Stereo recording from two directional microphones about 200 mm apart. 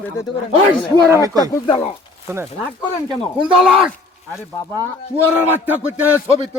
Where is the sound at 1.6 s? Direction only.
25° left (ahead or behind).